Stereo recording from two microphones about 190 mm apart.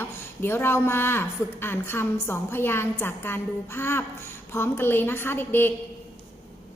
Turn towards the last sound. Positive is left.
turn(degrees=10)  # may be behind; listen again after turning